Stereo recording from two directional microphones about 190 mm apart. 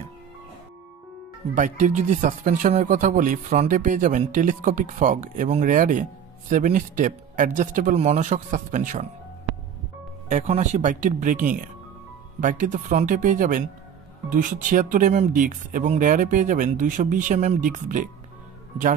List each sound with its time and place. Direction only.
1.5 s speech: 40° right (ahead or behind)
10.3 s speech: 35° right (ahead or behind)